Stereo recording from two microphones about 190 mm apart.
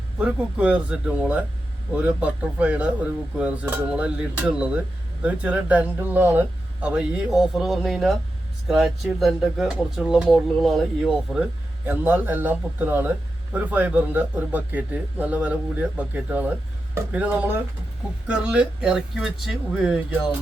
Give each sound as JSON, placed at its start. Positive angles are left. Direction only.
{"t": 0.2, "sound": "a man's voice", "side_deg": -5}